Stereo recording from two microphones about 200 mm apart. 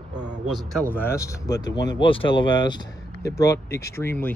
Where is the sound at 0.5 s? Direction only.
5° left (ahead or behind).